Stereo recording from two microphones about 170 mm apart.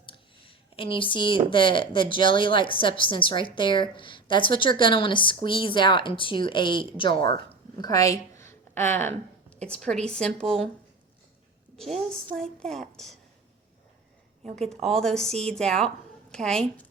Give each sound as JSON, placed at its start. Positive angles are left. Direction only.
{"t": 0.0, "sound": "a sound", "side_deg": 30}
{"t": 1.5, "sound": "a woman's voice", "side_deg": 30}
{"t": 11.8, "sound": "speech", "side_deg": 0}
{"t": 14.7, "sound": "speech", "side_deg": 5}